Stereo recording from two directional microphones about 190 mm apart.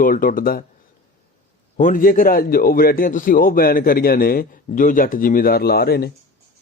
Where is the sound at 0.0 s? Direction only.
50° left (ahead or behind).